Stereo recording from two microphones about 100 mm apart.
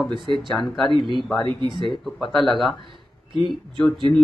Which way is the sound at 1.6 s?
50° right (ahead or behind).